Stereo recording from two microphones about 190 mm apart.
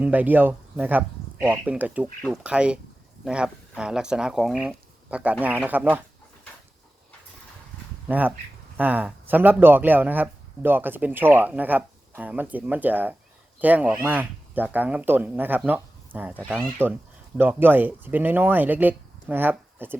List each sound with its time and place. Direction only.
0.0 s speech: 10° right (ahead or behind)
8.0 s speech: 10° right (ahead or behind)
16.3 s speech: 5° left (ahead or behind)
16.8 s speech: 10° right (ahead or behind)